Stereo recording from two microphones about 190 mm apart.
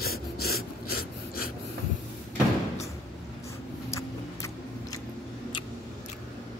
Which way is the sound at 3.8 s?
15° left (ahead or behind).